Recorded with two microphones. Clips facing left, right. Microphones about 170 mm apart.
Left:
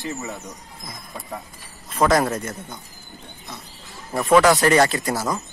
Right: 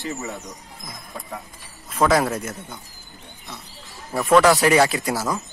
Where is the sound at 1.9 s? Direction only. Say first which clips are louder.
Even; centre (ahead or behind).